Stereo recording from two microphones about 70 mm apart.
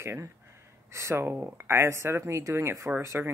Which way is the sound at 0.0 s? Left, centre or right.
Right.